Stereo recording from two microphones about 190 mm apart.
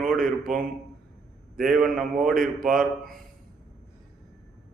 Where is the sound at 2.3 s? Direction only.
45° right (ahead or behind).